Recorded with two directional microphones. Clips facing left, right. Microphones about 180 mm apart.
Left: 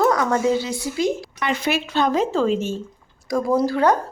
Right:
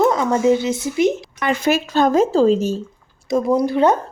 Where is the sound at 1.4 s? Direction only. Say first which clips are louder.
Right 4 dB; 45° right (ahead or behind).